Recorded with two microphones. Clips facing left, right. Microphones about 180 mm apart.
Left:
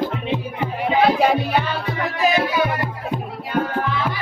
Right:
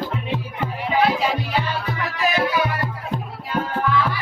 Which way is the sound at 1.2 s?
55° left (ahead or behind).